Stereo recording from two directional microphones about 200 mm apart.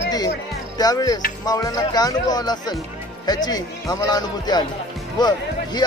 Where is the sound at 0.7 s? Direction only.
20° left (ahead or behind).